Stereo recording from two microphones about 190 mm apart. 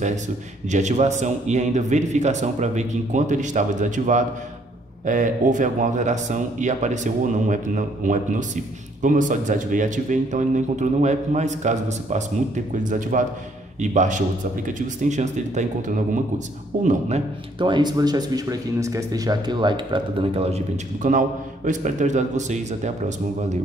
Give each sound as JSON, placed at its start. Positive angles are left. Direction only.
{"t": 0.7, "sound": "a man's voice", "side_deg": -40}
{"t": 16.7, "sound": "a man's voice", "side_deg": -45}
{"t": 17.6, "sound": "a man's voice", "side_deg": -25}